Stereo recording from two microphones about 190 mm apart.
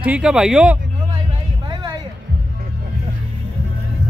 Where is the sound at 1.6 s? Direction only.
20° right (ahead or behind).